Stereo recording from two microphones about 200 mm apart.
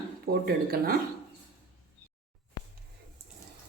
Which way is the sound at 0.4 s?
50° right (ahead or behind).